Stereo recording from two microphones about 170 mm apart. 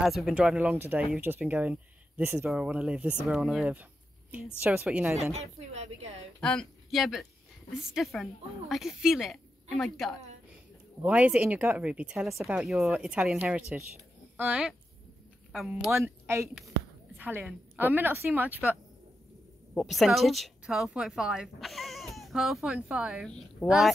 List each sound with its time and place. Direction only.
0.0 s a woman's voice: centre (ahead or behind)
5.3 s a woman's voice: 40° right (ahead or behind)
6.4 s a woman's voice: 5° left (ahead or behind)
15.9 s speech: 15° right (ahead or behind)
19.7 s a woman's voice: centre (ahead or behind)